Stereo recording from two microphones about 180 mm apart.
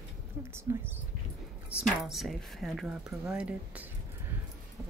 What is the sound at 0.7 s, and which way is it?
Speech, 15° right (ahead or behind).